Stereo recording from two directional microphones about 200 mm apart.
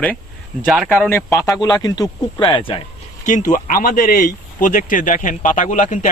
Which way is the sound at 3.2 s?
40° left (ahead or behind).